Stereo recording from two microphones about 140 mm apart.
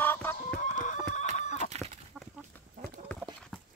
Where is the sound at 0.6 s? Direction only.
65° left (ahead or behind).